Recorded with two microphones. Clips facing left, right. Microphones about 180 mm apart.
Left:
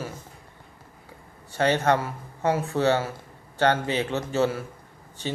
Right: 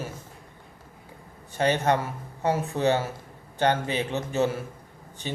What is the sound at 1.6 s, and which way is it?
Speech, 20° right (ahead or behind).